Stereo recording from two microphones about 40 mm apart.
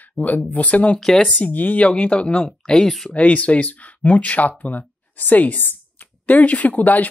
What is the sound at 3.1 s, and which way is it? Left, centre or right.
Speech, left.